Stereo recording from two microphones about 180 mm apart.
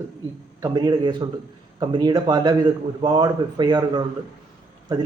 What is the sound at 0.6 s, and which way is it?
A man's voice, 20° right (ahead or behind).